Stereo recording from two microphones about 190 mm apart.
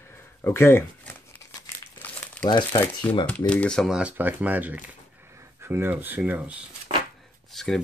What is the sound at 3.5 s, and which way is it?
Speech, 5° left (ahead or behind).